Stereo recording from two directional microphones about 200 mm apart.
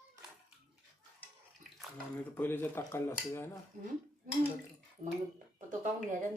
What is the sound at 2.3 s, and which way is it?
Speech, 10° left (ahead or behind).